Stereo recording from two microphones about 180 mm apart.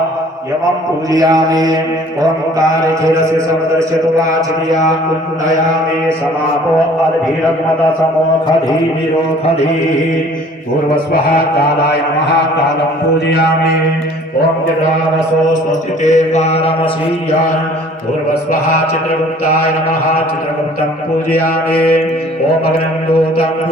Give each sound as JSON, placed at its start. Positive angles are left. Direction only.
{"t": 1.1, "sound": "a sound", "side_deg": -20}
{"t": 3.3, "sound": "a man's voice", "side_deg": -15}
{"t": 13.1, "sound": "mantra", "side_deg": 70}
{"t": 16.0, "sound": "mantra", "side_deg": 40}
{"t": 21.2, "sound": "mantra", "side_deg": 55}